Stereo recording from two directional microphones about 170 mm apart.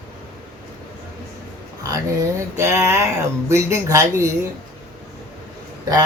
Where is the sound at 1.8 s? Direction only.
20° right (ahead or behind).